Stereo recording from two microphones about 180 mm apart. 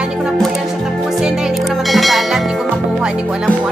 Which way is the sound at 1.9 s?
Centre (ahead or behind).